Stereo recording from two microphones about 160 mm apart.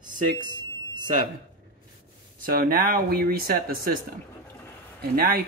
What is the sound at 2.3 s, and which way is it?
Speech, 65° right (ahead or behind).